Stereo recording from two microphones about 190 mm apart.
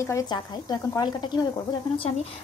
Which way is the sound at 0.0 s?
20° left (ahead or behind).